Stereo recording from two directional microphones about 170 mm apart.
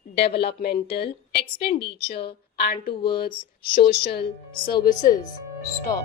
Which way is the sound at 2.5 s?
60° left (ahead or behind).